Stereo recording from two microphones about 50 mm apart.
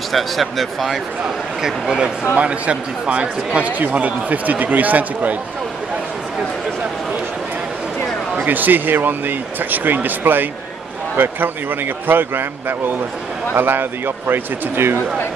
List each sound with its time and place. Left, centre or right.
0.1 s speech: centre
1.2 s speech: centre
2.3 s speech: right
8.5 s a man's voice: right